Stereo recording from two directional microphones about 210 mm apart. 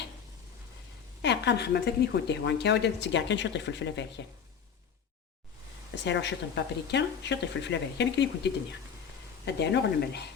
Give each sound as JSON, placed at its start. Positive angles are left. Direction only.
{"t": 1.2, "sound": "speech", "side_deg": 55}
{"t": 6.1, "sound": "speech", "side_deg": 55}